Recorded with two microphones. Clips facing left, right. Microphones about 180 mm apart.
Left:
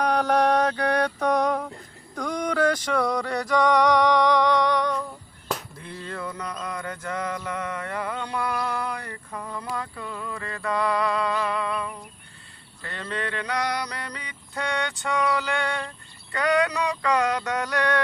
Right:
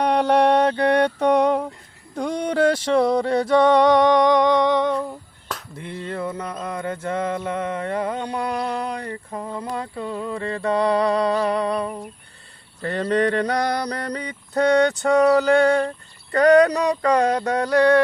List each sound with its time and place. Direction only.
0.0 s mantra: 30° right (ahead or behind)
2.1 s music: 30° right (ahead or behind)
12.8 s mantra: 40° right (ahead or behind)